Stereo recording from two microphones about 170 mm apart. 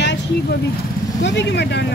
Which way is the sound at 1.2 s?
90° left.